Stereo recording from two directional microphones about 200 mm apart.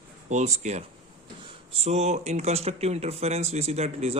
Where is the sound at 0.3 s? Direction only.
35° right (ahead or behind).